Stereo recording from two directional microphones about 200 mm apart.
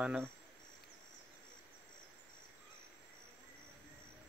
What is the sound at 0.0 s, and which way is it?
Speech, 5° right (ahead or behind).